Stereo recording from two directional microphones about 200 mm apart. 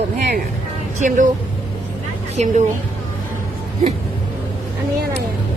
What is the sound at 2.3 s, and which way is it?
Speech, 35° right (ahead or behind).